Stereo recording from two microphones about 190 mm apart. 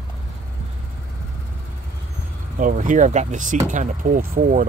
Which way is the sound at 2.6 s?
45° right (ahead or behind).